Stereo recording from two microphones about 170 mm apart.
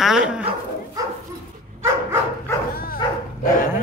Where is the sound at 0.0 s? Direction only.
5° right (ahead or behind).